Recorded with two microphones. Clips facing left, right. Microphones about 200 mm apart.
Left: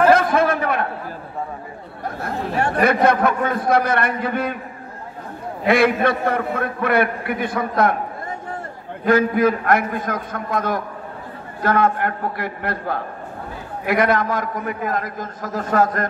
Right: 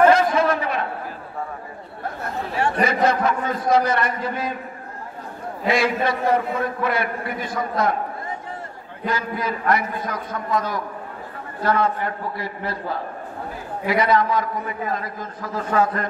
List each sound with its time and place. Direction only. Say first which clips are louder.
0.1 s a sound: left 2 dB; 55° left (ahead or behind)
2.6 s a man's voice: left 3 dB; 55° left (ahead or behind)
5.7 s a man's voice: left 4 dB; 60° left (ahead or behind)
9.0 s a man's voice: left 10 dB; 55° left (ahead or behind)